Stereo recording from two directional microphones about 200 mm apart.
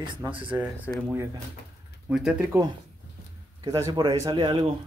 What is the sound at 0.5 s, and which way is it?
Speech, 15° right (ahead or behind).